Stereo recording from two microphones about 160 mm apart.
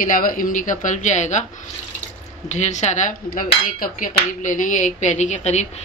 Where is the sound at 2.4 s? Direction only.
45° left (ahead or behind).